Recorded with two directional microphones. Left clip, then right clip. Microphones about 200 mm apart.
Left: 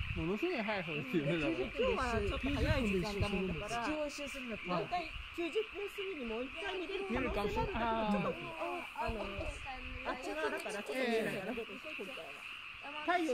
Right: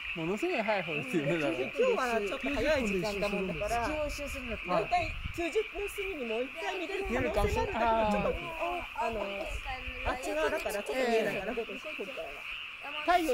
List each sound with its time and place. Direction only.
0.2 s speech: 30° right (ahead or behind)
1.8 s a man's voice: 40° right (ahead or behind)
4.9 s a man's voice: 40° right (ahead or behind)
10.3 s a man's voice: 35° right (ahead or behind)
13.0 s speech: 25° right (ahead or behind)